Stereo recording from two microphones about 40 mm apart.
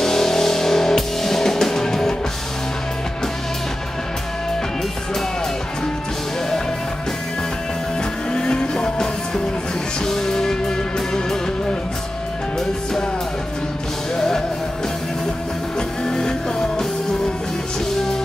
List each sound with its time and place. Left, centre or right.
0.0 s music: centre
8.3 s music: left
14.1 s music: centre
16.1 s music: centre